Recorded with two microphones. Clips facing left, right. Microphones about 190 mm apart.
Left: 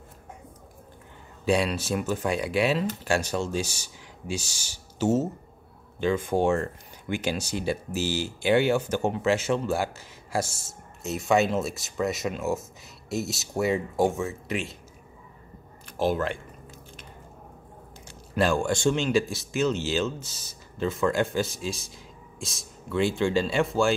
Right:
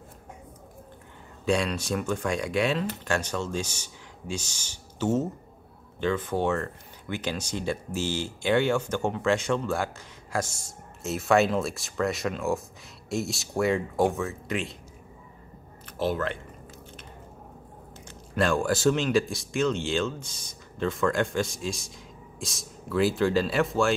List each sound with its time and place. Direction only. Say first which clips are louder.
1.4 s speech: left 2 dB; 5° left (ahead or behind)
16.0 s speech: left 2 dB; 15° left (ahead or behind)
18.3 s speech: left 1 dB; centre (ahead or behind)